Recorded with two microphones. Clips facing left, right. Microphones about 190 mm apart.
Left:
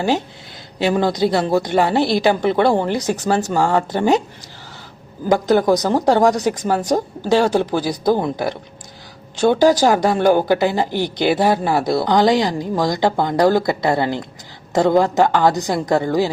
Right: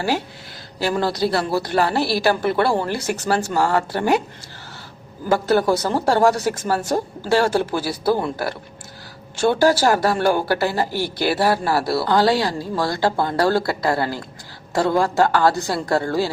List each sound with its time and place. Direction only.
0.8 s a woman's voice: 20° left (ahead or behind)
5.3 s a woman's voice: 15° left (ahead or behind)